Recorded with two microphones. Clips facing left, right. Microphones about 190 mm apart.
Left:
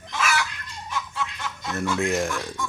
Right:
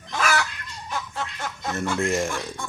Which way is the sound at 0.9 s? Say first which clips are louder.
Even; 45° right (ahead or behind).